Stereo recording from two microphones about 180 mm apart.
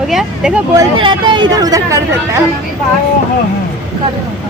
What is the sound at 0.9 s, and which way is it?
Speech, 25° right (ahead or behind).